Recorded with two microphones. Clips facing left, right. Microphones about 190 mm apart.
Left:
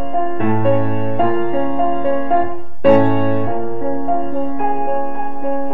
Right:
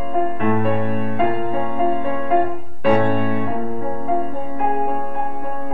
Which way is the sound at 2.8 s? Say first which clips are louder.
Left 6 dB; 40° left (ahead or behind).